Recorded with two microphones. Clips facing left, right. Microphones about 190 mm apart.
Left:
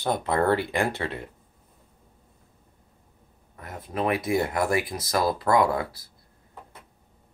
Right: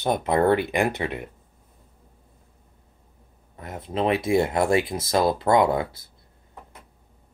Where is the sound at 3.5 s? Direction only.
25° right (ahead or behind).